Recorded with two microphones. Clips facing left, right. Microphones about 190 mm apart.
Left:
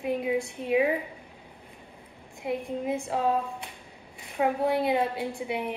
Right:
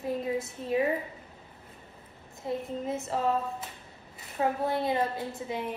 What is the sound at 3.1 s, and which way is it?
A woman's voice, 15° left (ahead or behind).